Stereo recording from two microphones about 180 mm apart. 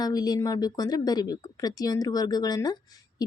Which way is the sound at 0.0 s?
20° left (ahead or behind).